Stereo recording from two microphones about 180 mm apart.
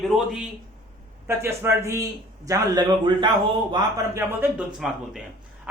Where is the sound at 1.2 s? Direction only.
15° right (ahead or behind).